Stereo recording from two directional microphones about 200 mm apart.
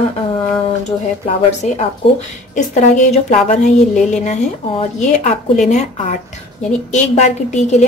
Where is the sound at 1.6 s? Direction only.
35° left (ahead or behind).